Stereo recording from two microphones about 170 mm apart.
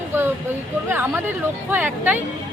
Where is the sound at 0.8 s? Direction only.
10° right (ahead or behind).